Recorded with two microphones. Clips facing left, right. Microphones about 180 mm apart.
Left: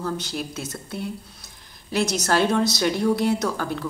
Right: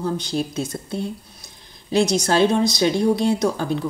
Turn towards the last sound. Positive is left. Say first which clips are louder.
# right 4 dB
turn(degrees=-20)  # may be behind; listen again after turning